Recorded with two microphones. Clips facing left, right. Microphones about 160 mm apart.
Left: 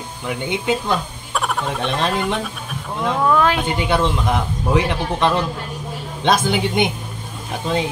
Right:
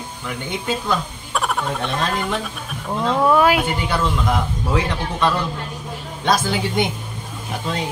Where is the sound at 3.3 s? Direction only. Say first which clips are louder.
Right 2 dB; 10° right (ahead or behind).